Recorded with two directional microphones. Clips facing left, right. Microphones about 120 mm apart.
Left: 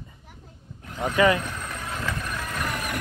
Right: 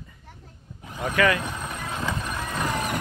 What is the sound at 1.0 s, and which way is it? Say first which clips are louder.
Speech: left 2 dB; 20° left (ahead or behind).